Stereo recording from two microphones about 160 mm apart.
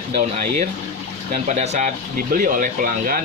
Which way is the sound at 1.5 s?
45° right (ahead or behind).